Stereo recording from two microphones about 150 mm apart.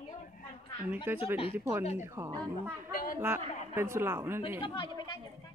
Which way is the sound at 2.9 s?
75° left (ahead or behind).